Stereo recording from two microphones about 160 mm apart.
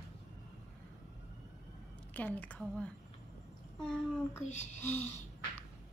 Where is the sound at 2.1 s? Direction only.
10° left (ahead or behind).